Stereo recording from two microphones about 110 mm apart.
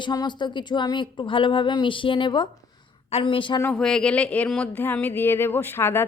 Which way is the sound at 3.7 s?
5° left (ahead or behind).